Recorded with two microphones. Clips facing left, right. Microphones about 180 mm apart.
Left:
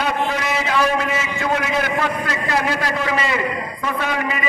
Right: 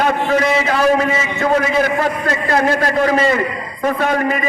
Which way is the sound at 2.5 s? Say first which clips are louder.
Right 6 dB; 45° right (ahead or behind).